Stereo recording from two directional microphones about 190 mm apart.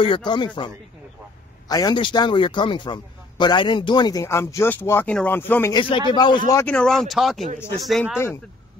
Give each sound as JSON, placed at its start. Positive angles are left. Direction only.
{"t": 0.0, "sound": "a man's voice", "side_deg": 25}
{"t": 1.7, "sound": "a man's voice", "side_deg": 20}
{"t": 5.8, "sound": "a man's voice", "side_deg": 25}
{"t": 6.6, "sound": "speech", "side_deg": 5}